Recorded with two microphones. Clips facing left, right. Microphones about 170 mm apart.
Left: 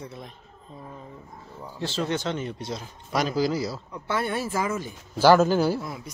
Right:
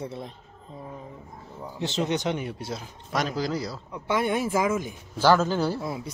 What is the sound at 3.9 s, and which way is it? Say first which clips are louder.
A man's voice: right 5 dB; 15° right (ahead or behind).